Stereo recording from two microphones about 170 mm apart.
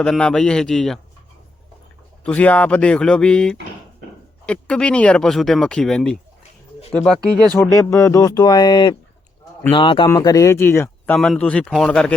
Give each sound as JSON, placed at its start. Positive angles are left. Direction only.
{"t": 0.0, "sound": "speech", "side_deg": 5}
{"t": 2.2, "sound": "speech", "side_deg": 10}
{"t": 7.5, "sound": "speech", "side_deg": 15}